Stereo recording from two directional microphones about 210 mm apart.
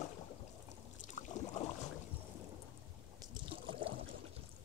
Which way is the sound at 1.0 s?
35° left (ahead or behind).